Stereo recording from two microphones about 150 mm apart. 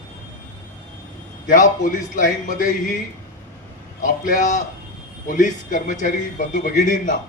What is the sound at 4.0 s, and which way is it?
A man's voice, 60° left (ahead or behind).